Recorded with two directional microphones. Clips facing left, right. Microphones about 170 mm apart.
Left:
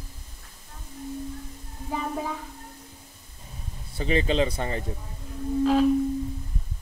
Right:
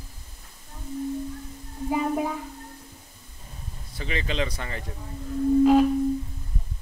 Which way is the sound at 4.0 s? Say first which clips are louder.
Left 6 dB; 35° left (ahead or behind).